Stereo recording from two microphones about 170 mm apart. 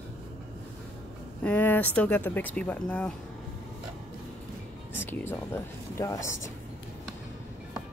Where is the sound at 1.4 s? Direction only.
10° left (ahead or behind).